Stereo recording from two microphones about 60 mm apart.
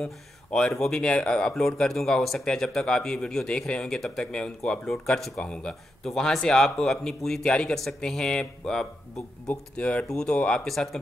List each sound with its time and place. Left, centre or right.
0.0 s speech: centre
9.5 s speech: left
10.6 s speech: centre